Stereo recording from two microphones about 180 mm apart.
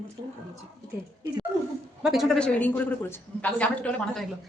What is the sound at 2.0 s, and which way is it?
A woman's voice, centre (ahead or behind).